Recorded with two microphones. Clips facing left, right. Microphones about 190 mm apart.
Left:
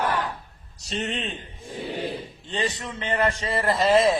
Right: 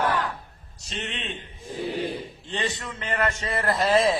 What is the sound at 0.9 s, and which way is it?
Speech, 40° left (ahead or behind).